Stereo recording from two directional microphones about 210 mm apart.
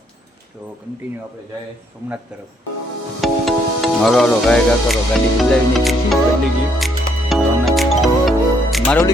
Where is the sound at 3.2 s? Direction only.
Centre (ahead or behind).